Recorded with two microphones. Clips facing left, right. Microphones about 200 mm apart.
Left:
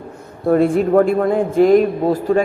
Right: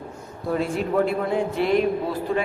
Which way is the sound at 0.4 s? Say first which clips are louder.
Left 10 dB; 55° left (ahead or behind).